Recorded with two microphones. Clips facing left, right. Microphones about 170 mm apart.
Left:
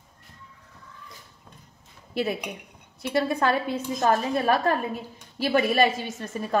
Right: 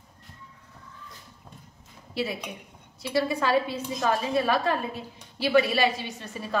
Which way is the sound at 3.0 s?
55° left (ahead or behind).